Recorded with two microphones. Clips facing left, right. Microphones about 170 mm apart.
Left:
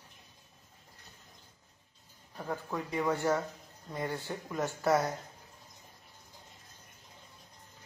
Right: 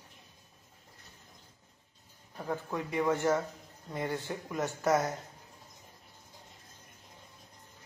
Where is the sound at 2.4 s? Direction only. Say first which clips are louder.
Right 1 dB; 20° right (ahead or behind).